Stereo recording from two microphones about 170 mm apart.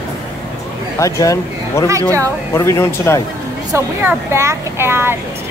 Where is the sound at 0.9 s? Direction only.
15° left (ahead or behind).